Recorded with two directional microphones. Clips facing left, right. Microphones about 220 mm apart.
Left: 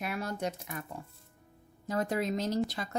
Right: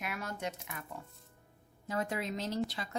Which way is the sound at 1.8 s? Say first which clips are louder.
Left 5 dB; 40° left (ahead or behind).